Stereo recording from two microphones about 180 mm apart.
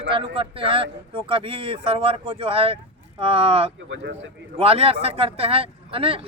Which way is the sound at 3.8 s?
90° right.